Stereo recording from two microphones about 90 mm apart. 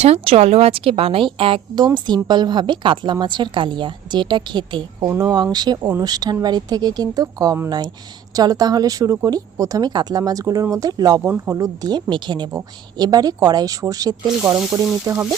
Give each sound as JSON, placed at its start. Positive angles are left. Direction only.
{"t": 0.3, "sound": "a woman's voice", "side_deg": -90}
{"t": 1.7, "sound": "a woman's voice", "side_deg": -55}
{"t": 13.0, "sound": "speech", "side_deg": -45}
{"t": 14.5, "sound": "speech", "side_deg": -5}
{"t": 15.0, "sound": "sizzle", "side_deg": -30}